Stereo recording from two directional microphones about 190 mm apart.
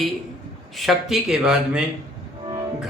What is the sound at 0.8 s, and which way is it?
A man's voice, centre (ahead or behind).